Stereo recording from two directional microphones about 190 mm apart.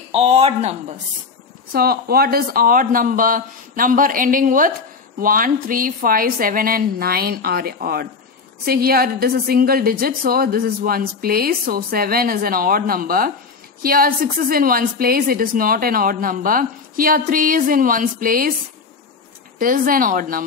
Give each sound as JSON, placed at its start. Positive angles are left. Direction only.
{"t": 0.1, "sound": "speech", "side_deg": -30}
{"t": 1.7, "sound": "a woman's voice", "side_deg": -55}
{"t": 19.6, "sound": "a woman's voice", "side_deg": -50}